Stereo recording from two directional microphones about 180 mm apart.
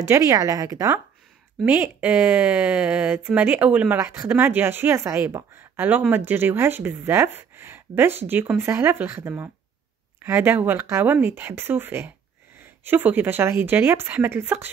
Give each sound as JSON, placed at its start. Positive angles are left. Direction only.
{"t": 0.0, "sound": "a woman's voice", "side_deg": -15}